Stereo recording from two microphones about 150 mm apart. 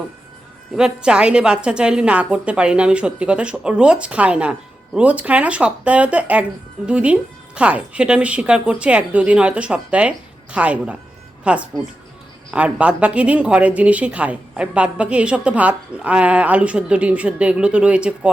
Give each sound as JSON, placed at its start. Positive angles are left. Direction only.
{"t": 0.8, "sound": "speech", "side_deg": -5}